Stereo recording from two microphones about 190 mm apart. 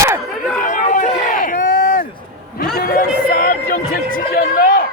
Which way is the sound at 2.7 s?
50° left (ahead or behind).